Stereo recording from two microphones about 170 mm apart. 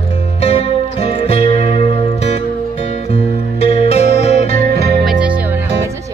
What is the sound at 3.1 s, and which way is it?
Music, 35° left (ahead or behind).